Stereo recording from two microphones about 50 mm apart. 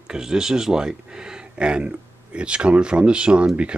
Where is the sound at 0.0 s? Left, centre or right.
Centre.